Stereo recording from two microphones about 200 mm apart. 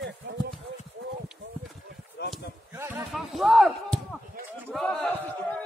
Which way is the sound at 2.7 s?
15° right (ahead or behind).